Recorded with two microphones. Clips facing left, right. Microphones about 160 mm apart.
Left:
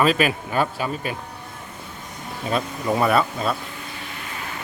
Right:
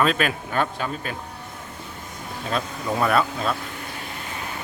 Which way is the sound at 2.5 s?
5° left (ahead or behind).